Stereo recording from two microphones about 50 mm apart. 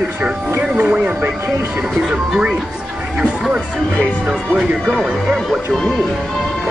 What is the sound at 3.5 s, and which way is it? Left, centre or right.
Speech, right.